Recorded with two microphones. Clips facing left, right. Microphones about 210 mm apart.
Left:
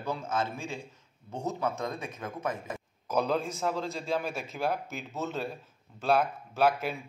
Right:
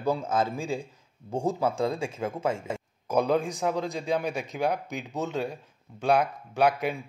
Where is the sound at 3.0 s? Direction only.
10° right (ahead or behind).